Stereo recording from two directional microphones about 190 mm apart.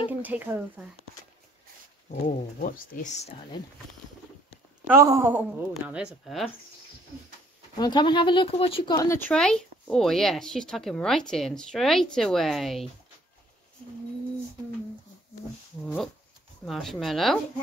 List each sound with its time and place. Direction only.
0.2 s a woman's voice: 10° right (ahead or behind)
2.0 s speech: 45° left (ahead or behind)
4.8 s a woman's voice: 15° right (ahead or behind); by 6.5 s centre (ahead or behind)
7.7 s speech: 20° left (ahead or behind)
9.3 s speech: 5° left (ahead or behind)
15.8 s speech: 10° left (ahead or behind)